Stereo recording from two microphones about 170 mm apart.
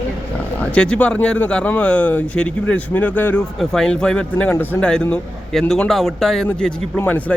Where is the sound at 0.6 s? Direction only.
5° left (ahead or behind).